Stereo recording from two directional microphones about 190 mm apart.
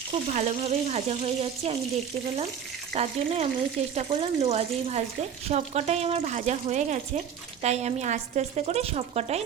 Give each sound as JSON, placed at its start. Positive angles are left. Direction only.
{"t": 0.1, "sound": "speech", "side_deg": -35}
{"t": 2.9, "sound": "speech", "side_deg": -35}